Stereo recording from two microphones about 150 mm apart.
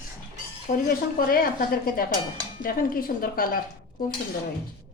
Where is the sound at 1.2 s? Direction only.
75° left (ahead or behind).